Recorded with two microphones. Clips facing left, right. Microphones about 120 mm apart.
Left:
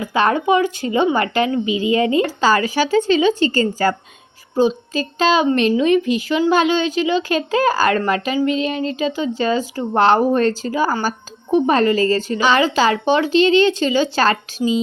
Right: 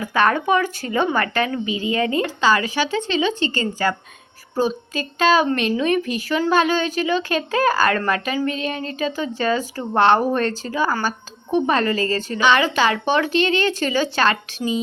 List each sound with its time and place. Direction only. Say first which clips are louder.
0.0 s a woman's voice: left 2 dB; 25° left (ahead or behind)
1.6 s speech: left 5 dB; 35° right (ahead or behind)
1.9 s a woman's voice: left 4 dB; 25° left (ahead or behind)
2.2 s speech: left 2 dB; 35° left (ahead or behind)
4.5 s a woman's voice: left 5 dB; 25° left (ahead or behind)